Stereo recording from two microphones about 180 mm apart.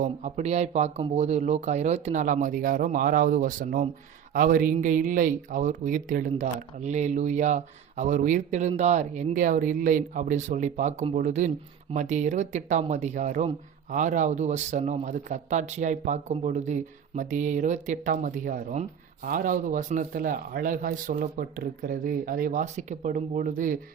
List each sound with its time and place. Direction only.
0.0 s a man's voice: 40° right (ahead or behind)